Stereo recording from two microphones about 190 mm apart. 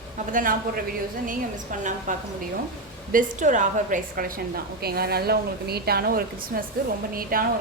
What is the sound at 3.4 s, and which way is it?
A woman's voice, 40° right (ahead or behind).